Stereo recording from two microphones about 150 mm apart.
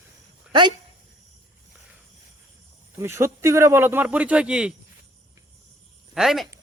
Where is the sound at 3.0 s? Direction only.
15° right (ahead or behind).